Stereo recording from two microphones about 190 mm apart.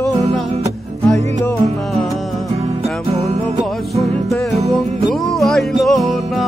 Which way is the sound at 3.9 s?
Centre (ahead or behind).